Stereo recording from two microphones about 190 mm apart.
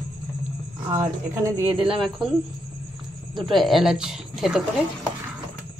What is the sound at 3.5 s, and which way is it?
Speech, centre (ahead or behind).